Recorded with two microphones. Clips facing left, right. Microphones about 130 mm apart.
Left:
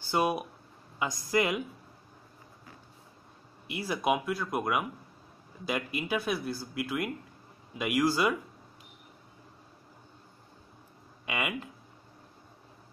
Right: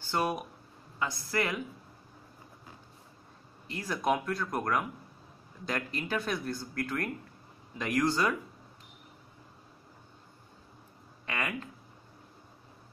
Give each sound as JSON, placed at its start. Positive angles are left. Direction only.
{"t": 0.1, "sound": "speech", "side_deg": 10}
{"t": 3.6, "sound": "speech", "side_deg": 10}
{"t": 11.2, "sound": "speech", "side_deg": 15}